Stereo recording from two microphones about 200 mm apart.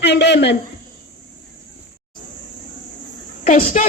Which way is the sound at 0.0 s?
60° left (ahead or behind).